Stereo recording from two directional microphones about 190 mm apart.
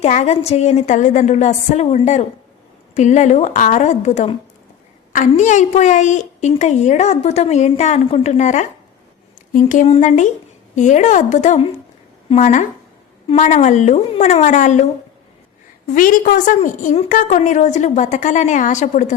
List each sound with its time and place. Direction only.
0.0 s a woman's voice: 35° left (ahead or behind)
16.0 s a woman's voice: 45° left (ahead or behind)